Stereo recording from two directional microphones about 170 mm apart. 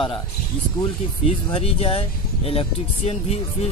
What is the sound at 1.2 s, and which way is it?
Speech, 35° left (ahead or behind).